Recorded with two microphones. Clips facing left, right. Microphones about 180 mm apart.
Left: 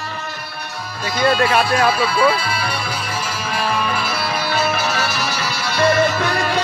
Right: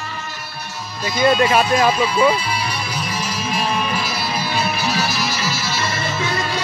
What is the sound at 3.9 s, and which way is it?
Music, 60° left (ahead or behind).